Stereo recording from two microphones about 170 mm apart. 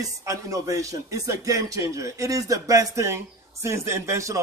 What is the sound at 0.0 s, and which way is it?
A man's voice, 20° right (ahead or behind).